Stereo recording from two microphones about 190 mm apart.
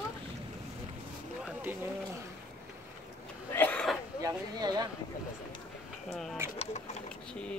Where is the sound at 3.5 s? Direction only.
10° left (ahead or behind).